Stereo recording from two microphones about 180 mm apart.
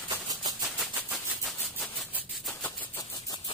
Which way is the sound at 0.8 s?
Centre (ahead or behind).